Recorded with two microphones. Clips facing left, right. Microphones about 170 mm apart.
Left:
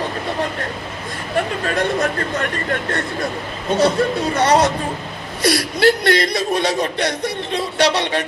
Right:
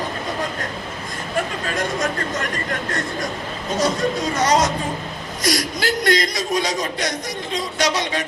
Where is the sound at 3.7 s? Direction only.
60° left (ahead or behind).